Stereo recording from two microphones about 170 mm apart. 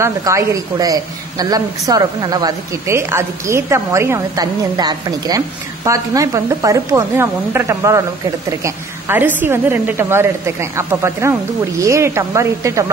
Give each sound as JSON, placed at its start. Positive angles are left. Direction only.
{"t": 0.0, "sound": "a woman's voice", "side_deg": -15}